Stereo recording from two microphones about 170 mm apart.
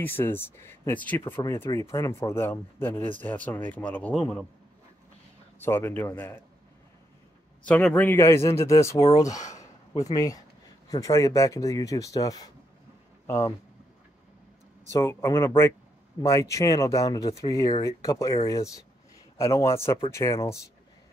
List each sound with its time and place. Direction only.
0.0 s speech: 10° left (ahead or behind)
5.6 s speech: 15° left (ahead or behind)
7.6 s speech: 10° left (ahead or behind)
9.6 s a sound: 20° left (ahead or behind)
10.9 s speech: 20° left (ahead or behind)
14.9 s speech: 15° left (ahead or behind)